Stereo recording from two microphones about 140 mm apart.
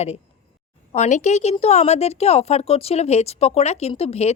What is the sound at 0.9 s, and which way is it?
A woman's voice, 55° left (ahead or behind).